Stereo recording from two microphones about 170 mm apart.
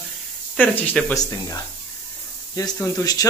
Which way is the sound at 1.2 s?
20° left (ahead or behind).